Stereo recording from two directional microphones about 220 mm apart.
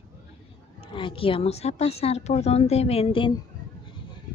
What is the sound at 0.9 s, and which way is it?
Speech, 25° left (ahead or behind).